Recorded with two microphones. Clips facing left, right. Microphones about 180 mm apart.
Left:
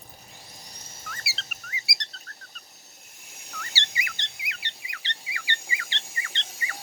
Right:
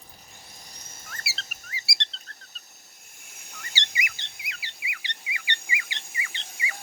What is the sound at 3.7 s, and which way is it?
Bird, 20° right (ahead or behind).